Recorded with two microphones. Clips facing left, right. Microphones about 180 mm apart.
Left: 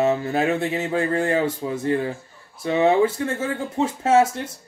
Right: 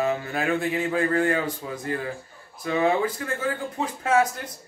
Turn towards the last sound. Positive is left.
turn(degrees=25)  # may be behind; listen again after turning